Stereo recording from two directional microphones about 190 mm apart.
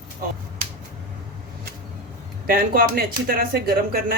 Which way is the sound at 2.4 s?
50° right (ahead or behind).